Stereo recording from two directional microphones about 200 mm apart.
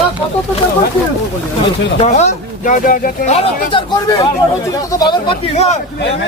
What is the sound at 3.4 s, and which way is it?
Speech, 25° left (ahead or behind).